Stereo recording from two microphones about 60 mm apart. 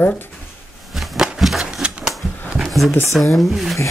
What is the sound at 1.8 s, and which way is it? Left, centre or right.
Typewriter, centre.